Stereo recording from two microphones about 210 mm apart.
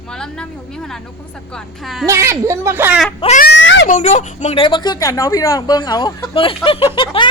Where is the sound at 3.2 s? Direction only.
30° left (ahead or behind).